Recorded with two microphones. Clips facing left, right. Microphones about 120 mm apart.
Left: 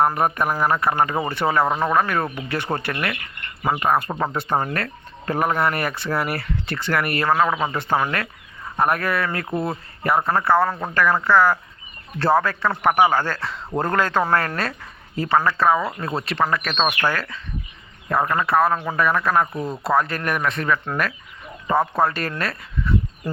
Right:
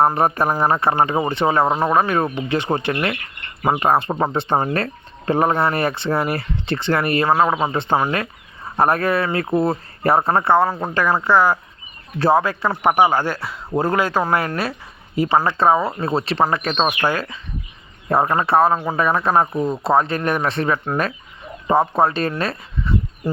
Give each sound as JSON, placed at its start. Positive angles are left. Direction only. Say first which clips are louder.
{"t": 0.0, "sound": "a man's voice", "louder": "right 3 dB", "side_deg": -30}
{"t": 15.4, "sound": "speech", "louder": "right 2 dB", "side_deg": -25}
{"t": 18.1, "sound": "speech", "louder": "right 3 dB", "side_deg": -30}